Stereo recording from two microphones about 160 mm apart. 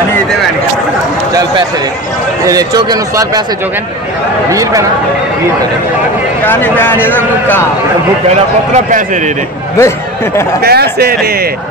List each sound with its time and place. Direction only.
2.4 s a man's voice: 25° right (ahead or behind)
4.5 s a man's voice: 20° right (ahead or behind)
6.4 s speech: 15° left (ahead or behind)
8.7 s a man's voice: 50° right (ahead or behind)
9.8 s speech: 15° left (ahead or behind)
10.6 s speech: 80° right